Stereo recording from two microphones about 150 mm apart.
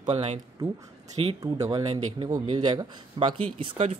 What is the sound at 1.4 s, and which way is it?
Speech, 25° right (ahead or behind).